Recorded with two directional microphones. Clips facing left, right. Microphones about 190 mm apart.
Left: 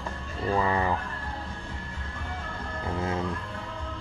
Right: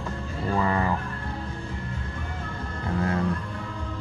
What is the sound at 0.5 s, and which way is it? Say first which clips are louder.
Music: right 1 dB; 15° left (ahead or behind).